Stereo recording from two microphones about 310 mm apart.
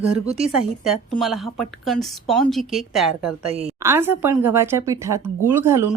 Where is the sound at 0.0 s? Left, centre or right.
Centre.